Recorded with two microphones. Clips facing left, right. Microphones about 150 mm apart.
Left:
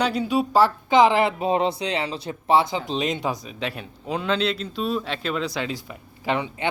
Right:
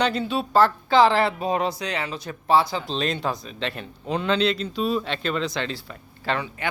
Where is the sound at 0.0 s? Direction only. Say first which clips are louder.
Left 2 dB; 10° left (ahead or behind).